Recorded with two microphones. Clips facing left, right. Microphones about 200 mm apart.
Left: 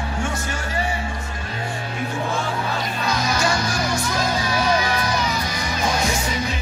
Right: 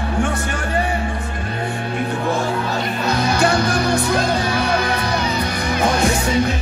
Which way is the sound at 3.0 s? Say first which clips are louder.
Right 5 dB; 60° right (ahead or behind).